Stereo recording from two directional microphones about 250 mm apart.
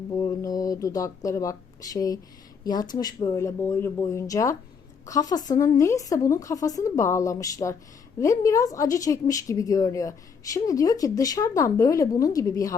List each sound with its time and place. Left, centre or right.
0.2 s a woman's voice: centre